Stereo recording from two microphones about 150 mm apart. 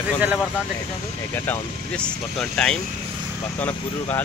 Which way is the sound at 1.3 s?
15° left (ahead or behind).